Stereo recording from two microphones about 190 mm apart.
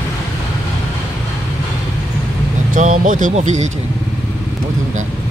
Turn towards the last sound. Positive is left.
turn(degrees=-40)  # may be behind; listen again after turning